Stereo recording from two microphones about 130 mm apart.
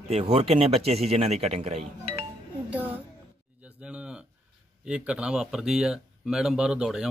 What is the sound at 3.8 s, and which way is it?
Speech, 10° right (ahead or behind).